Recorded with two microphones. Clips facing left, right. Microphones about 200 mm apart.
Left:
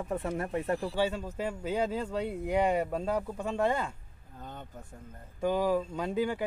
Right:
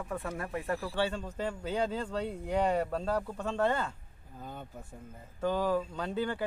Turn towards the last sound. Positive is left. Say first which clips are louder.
# left 3 dB
turn(degrees=10)  # may be behind; listen again after turning